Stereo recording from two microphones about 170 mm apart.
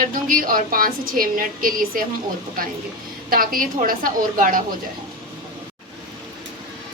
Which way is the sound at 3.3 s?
55° right (ahead or behind).